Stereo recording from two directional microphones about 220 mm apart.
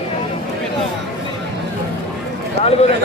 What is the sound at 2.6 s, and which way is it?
Speech, 50° right (ahead or behind).